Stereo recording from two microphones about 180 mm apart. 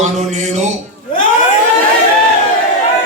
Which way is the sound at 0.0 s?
40° right (ahead or behind).